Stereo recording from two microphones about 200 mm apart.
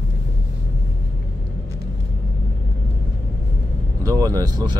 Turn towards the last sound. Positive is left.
turn(degrees=-20)  # may be behind; listen again after turning